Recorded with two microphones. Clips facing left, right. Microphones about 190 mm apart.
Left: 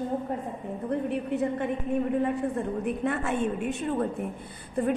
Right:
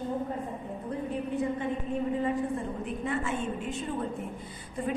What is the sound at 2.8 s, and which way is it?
A woman's voice, 65° left (ahead or behind).